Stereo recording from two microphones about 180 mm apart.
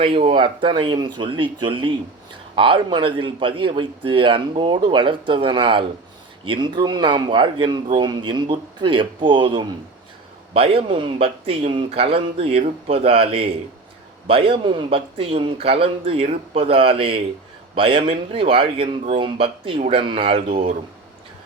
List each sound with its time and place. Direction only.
0.0 s speech: 30° right (ahead or behind)